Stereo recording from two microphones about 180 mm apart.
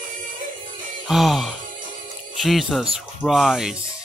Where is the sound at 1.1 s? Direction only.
Centre (ahead or behind).